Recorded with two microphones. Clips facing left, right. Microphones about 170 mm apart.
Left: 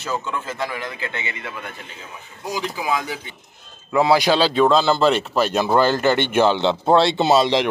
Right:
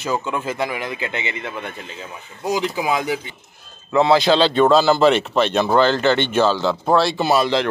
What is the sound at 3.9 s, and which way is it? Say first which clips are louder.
Speech: right 2 dB; 10° left (ahead or behind).